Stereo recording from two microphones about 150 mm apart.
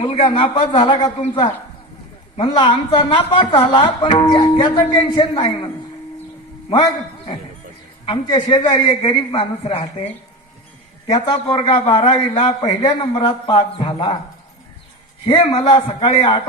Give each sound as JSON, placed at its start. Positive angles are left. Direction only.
{"t": 0.0, "sound": "a woman's voice", "side_deg": 40}
{"t": 2.3, "sound": "a woman's voice", "side_deg": 35}
{"t": 8.0, "sound": "a woman's voice", "side_deg": 30}
{"t": 11.1, "sound": "a man's voice", "side_deg": 25}
{"t": 11.5, "sound": "a woman's voice", "side_deg": 35}
{"t": 15.2, "sound": "a woman's voice", "side_deg": 35}